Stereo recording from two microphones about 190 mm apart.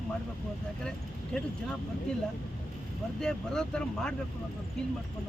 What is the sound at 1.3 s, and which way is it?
Speech, 5° left (ahead or behind).